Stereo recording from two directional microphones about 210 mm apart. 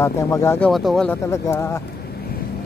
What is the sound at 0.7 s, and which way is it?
Speech, centre (ahead or behind).